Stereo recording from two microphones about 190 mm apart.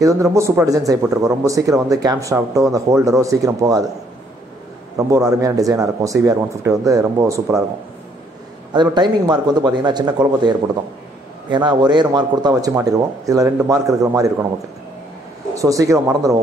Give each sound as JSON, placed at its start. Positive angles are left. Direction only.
{"t": 0.0, "sound": "speech", "side_deg": -15}
{"t": 4.9, "sound": "speech", "side_deg": -15}
{"t": 8.7, "sound": "speech", "side_deg": -25}
{"t": 11.5, "sound": "speech", "side_deg": -25}
{"t": 15.5, "sound": "speech", "side_deg": -15}